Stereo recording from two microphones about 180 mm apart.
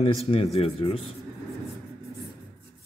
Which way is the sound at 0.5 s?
30° left (ahead or behind).